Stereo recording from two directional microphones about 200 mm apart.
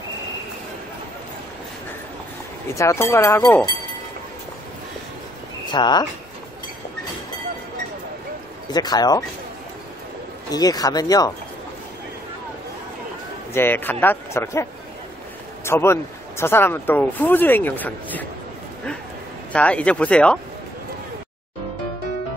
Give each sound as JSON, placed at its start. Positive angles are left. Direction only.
{"t": 2.7, "sound": "speech", "side_deg": 15}
{"t": 5.7, "sound": "speech", "side_deg": 20}
{"t": 8.7, "sound": "speech", "side_deg": 20}
{"t": 10.5, "sound": "speech", "side_deg": 20}
{"t": 13.5, "sound": "speech", "side_deg": 10}
{"t": 19.5, "sound": "speech", "side_deg": 5}